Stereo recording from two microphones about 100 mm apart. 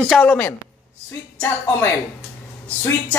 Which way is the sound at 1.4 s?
20° left (ahead or behind).